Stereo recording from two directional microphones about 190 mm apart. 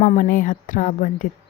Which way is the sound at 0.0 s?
45° left (ahead or behind).